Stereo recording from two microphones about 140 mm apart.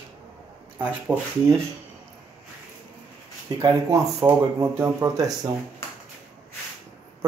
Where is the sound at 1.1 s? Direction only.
10° right (ahead or behind).